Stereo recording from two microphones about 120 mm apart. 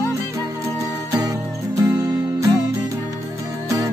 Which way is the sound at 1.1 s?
30° right (ahead or behind).